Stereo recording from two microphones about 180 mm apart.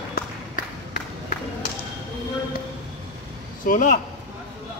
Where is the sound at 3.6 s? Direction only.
45° left (ahead or behind).